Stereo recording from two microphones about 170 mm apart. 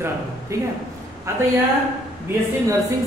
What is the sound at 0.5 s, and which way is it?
Speech, 15° right (ahead or behind).